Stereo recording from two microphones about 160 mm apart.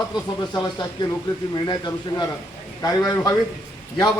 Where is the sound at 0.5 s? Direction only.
25° left (ahead or behind).